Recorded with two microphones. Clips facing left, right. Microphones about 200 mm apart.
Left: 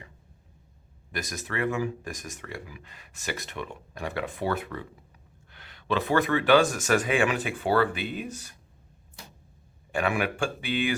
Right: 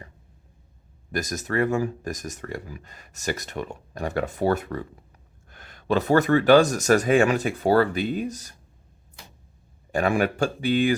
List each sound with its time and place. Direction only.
1.1 s speech: 45° right (ahead or behind)
9.9 s speech: 40° right (ahead or behind)